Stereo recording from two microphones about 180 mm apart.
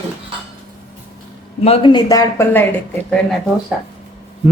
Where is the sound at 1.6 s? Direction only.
30° left (ahead or behind).